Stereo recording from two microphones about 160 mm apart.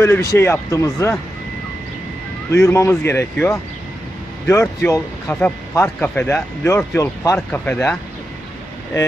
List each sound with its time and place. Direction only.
0.0 s speech: 15° left (ahead or behind)
2.5 s speech: 15° left (ahead or behind)